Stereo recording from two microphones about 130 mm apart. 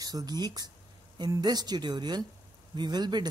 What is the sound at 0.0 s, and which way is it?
Speech, 30° right (ahead or behind).